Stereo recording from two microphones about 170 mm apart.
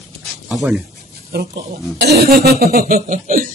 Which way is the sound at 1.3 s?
65° right (ahead or behind).